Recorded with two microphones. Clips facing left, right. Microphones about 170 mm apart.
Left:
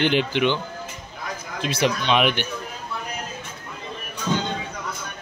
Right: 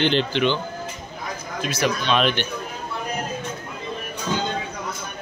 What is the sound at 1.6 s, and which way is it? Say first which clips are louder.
Speech: left 1 dB; 25° left (ahead or behind).